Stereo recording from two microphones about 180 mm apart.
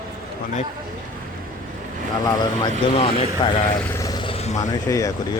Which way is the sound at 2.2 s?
30° left (ahead or behind).